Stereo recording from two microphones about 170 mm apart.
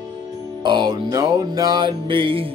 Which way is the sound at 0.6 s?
25° right (ahead or behind).